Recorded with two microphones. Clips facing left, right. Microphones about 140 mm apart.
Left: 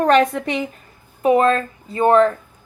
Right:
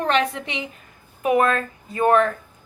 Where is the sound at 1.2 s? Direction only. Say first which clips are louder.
Left 4 dB; 30° left (ahead or behind).